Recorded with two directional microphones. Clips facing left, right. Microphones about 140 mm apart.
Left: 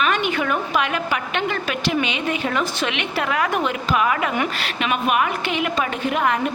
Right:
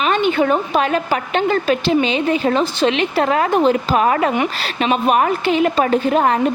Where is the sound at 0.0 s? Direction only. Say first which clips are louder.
Right 5 dB; 30° right (ahead or behind).